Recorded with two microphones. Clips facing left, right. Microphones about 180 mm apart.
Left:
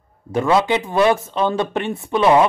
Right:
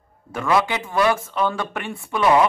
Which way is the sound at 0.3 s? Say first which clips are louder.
Left 4 dB; 20° left (ahead or behind).